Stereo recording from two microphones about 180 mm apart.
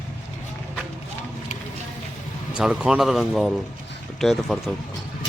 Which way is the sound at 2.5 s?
5° right (ahead or behind).